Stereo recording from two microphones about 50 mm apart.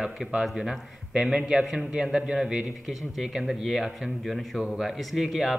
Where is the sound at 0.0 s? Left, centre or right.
Centre.